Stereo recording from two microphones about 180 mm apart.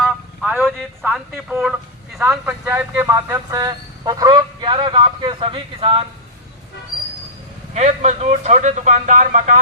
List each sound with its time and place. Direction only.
0.0 s a sound: 10° right (ahead or behind)
2.5 s speech: 15° right (ahead or behind); by 6.1 s 30° right (ahead or behind)
7.7 s speech: 40° right (ahead or behind)